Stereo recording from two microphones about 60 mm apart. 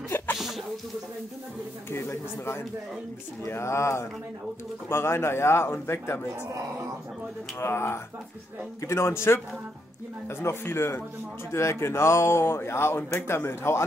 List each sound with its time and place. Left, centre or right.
0.4 s a sound: centre
1.9 s speech: left
7.5 s speech: left